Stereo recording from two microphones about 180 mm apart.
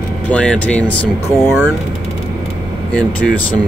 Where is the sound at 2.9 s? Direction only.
5° left (ahead or behind).